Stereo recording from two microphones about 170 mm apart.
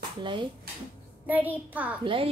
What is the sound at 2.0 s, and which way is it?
Speech, 30° right (ahead or behind).